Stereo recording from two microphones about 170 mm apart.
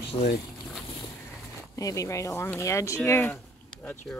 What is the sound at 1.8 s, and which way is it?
Speech, 20° left (ahead or behind).